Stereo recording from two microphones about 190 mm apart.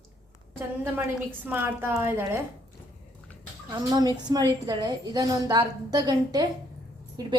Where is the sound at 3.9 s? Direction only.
20° right (ahead or behind).